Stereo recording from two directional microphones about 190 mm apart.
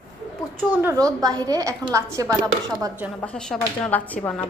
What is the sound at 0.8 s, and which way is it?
A woman's voice, 15° right (ahead or behind).